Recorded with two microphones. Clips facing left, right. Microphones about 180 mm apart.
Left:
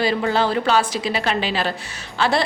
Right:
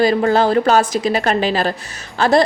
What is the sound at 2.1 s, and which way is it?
Music, 45° right (ahead or behind).